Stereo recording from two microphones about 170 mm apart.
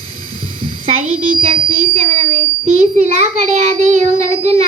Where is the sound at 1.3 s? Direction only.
55° right (ahead or behind).